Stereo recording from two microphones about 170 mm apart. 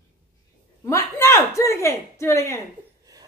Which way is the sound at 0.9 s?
15° left (ahead or behind).